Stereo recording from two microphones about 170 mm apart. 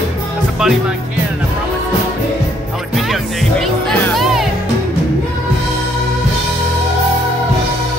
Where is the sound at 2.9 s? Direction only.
Centre (ahead or behind).